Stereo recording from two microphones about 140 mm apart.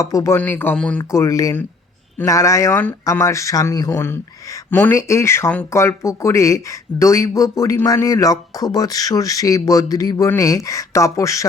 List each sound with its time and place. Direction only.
0.0 s speech: 25° left (ahead or behind)
1.1 s speech: 20° left (ahead or behind)